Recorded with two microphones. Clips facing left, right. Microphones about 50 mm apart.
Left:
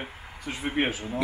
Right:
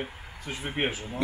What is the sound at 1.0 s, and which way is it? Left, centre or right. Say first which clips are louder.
Speech: left 2 dB; centre.